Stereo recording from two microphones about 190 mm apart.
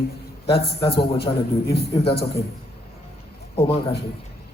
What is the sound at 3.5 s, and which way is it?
Speech, 30° left (ahead or behind).